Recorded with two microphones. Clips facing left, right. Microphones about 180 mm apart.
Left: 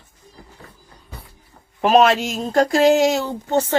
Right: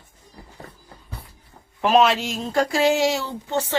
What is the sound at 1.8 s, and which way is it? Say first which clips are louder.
Speech: left 3 dB; 45° left (ahead or behind).